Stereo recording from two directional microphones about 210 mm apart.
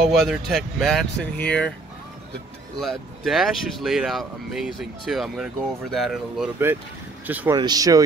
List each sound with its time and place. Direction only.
0.0 s speech: centre (ahead or behind)
2.8 s speech: centre (ahead or behind)
7.5 s speech: 20° right (ahead or behind)